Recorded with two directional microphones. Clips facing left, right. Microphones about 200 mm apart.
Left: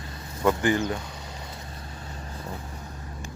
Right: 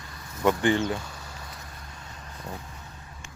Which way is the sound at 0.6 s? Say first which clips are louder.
Even; 20° right (ahead or behind).